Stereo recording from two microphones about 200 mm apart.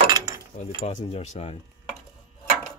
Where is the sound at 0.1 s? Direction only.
20° right (ahead or behind).